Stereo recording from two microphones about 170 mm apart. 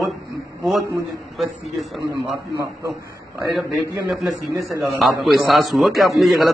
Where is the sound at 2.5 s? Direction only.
20° right (ahead or behind).